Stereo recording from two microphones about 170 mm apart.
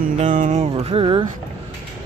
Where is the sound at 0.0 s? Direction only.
50° right (ahead or behind); by 1.2 s 30° right (ahead or behind).